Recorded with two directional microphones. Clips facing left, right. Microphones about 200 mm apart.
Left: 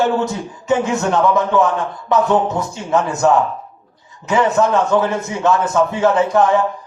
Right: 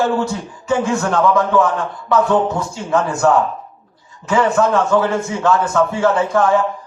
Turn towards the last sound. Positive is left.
turn(degrees=20)  # may be behind; listen again after turning